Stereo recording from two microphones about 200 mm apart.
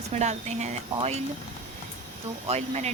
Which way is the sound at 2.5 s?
35° right (ahead or behind).